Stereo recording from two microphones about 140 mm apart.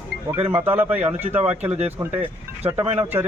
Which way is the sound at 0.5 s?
15° right (ahead or behind).